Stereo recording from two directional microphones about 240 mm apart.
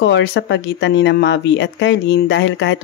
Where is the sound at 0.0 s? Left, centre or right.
Left.